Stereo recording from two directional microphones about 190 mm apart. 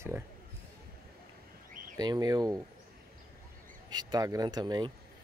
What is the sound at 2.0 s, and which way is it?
Speech, 20° right (ahead or behind).